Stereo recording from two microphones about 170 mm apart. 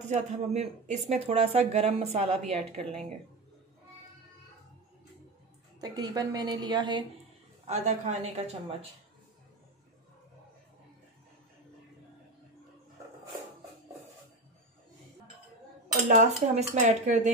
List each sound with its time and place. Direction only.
0.0 s speech: 40° right (ahead or behind)
5.8 s a woman's voice: 25° right (ahead or behind)
7.6 s speech: 40° right (ahead or behind)
16.1 s speech: 45° right (ahead or behind)